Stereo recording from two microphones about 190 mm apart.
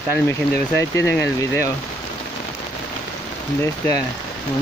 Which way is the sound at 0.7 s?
15° left (ahead or behind).